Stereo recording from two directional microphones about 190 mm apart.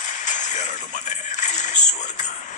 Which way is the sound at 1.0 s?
40° left (ahead or behind).